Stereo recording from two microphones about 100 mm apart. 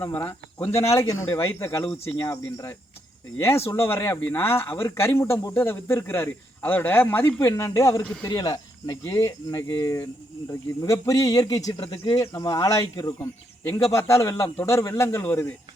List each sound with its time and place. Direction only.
0.0 s a man's voice: 25° left (ahead or behind); by 11.9 s 40° left (ahead or behind)
12.1 s a man's voice: 25° left (ahead or behind)